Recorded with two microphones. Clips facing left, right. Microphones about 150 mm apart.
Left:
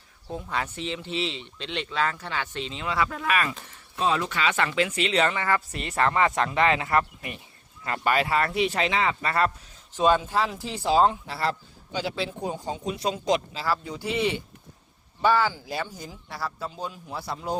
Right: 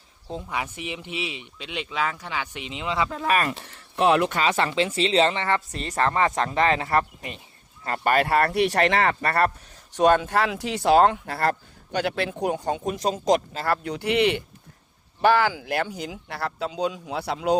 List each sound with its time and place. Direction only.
0.4 s speech: 15° right (ahead or behind)
3.2 s speech: 35° right (ahead or behind)
3.7 s speech: 70° right (ahead or behind)
4.4 s speech: 35° right (ahead or behind); by 13.0 s 55° right (ahead or behind)
13.0 s speech: 40° right (ahead or behind)
13.8 s speech: 70° right (ahead or behind)